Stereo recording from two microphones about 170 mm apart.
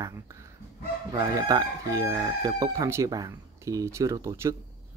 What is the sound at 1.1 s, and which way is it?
Chicken, 20° right (ahead or behind).